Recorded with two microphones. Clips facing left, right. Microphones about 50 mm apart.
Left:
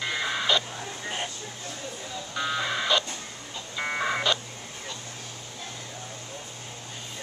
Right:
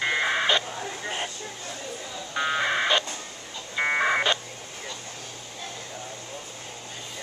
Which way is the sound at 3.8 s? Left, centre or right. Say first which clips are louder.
Right 5 dB; right.